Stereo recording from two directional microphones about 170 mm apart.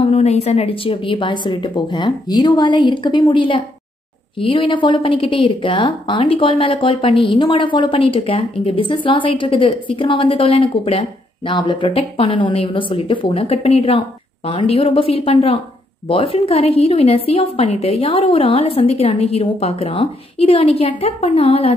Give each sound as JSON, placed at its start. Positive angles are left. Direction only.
{"t": 0.0, "sound": "a woman's voice", "side_deg": 35}